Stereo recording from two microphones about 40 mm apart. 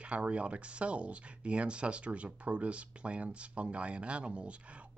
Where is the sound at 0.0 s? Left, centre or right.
Right.